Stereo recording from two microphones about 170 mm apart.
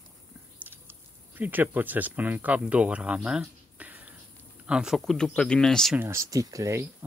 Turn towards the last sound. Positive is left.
turn(degrees=-20)  # may be behind; listen again after turning